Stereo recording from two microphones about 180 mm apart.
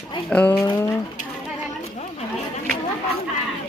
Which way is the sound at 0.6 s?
20° left (ahead or behind).